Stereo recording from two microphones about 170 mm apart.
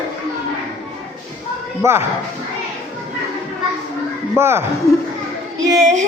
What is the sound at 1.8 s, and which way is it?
Speech, 15° right (ahead or behind).